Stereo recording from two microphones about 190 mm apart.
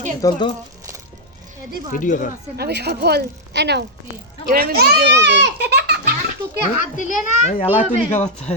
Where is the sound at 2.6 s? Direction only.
60° right (ahead or behind).